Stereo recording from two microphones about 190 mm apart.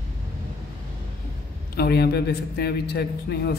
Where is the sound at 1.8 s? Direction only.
55° left (ahead or behind).